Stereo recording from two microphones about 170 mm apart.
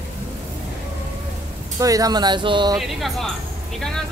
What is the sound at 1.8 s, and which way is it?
Speech, 20° right (ahead or behind).